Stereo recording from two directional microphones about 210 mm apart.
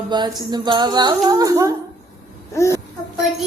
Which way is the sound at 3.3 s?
Centre (ahead or behind).